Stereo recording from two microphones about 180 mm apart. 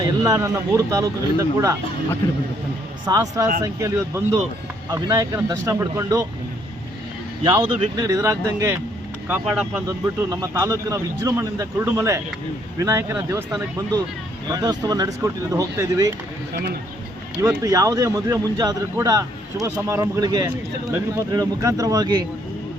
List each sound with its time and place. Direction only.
0.0 s speech: 20° right (ahead or behind)
3.1 s speech: 20° right (ahead or behind)
7.8 s speech: 20° right (ahead or behind)
9.8 s speech: 20° right (ahead or behind)
14.5 s speech: 20° right (ahead or behind)
17.4 s speech: 15° right (ahead or behind)